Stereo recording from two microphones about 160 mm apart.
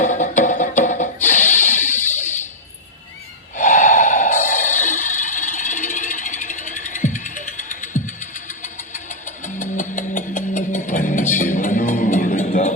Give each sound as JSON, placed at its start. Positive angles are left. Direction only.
{"t": 0.0, "sound": "music", "side_deg": 50}
{"t": 2.0, "sound": "fire alarm", "side_deg": 50}
{"t": 3.5, "sound": "snort", "side_deg": 50}